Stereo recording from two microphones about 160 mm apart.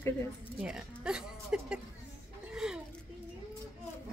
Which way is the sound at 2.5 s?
5° right (ahead or behind).